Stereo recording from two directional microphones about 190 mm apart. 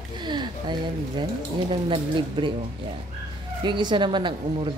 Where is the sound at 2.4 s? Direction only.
25° right (ahead or behind).